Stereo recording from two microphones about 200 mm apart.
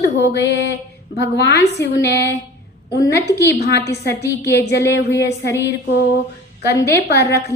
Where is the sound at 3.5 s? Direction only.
55° left (ahead or behind).